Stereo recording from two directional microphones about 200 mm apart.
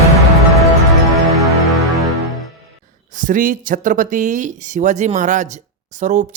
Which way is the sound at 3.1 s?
40° right (ahead or behind).